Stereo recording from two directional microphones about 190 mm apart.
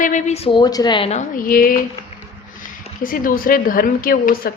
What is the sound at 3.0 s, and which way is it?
A woman's voice, 45° left (ahead or behind).